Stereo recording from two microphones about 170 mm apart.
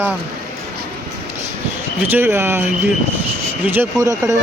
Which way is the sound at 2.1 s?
15° right (ahead or behind).